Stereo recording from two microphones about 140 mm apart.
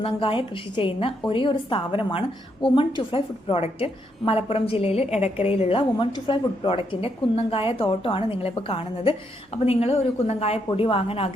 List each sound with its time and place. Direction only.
0.0 s a woman's voice: 40° left (ahead or behind)